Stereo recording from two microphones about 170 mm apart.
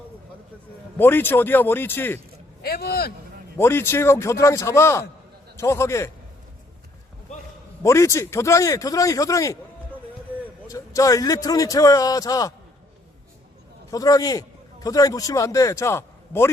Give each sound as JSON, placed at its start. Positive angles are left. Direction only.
{"t": 0.9, "sound": "a man's voice", "side_deg": 10}
{"t": 2.6, "sound": "speech", "side_deg": 65}
{"t": 3.6, "sound": "a man's voice", "side_deg": 15}
{"t": 7.8, "sound": "a man's voice", "side_deg": 15}
{"t": 13.9, "sound": "a man's voice", "side_deg": 20}